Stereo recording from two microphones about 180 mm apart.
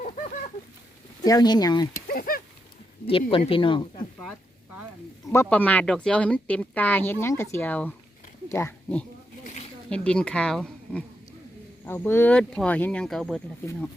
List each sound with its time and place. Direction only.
1.2 s speech: 20° left (ahead or behind)
2.0 s a sound: 55° left (ahead or behind)
3.1 s speech: 30° left (ahead or behind)
5.3 s speech: 10° left (ahead or behind)